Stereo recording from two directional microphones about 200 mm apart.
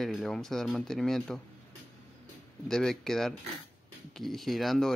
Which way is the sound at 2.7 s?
Centre (ahead or behind).